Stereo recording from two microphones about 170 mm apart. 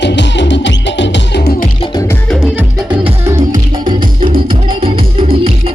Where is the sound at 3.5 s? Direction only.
30° right (ahead or behind).